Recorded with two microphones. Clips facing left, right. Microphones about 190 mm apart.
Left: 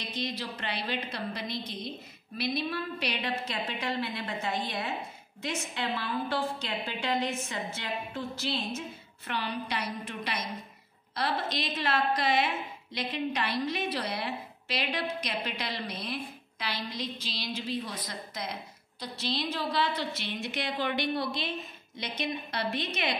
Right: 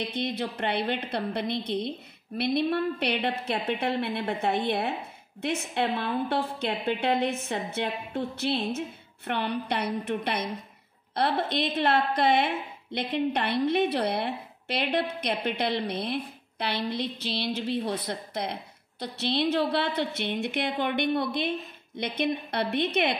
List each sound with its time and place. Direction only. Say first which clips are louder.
0.0 s a woman's voice: right 6 dB; 60° right (ahead or behind)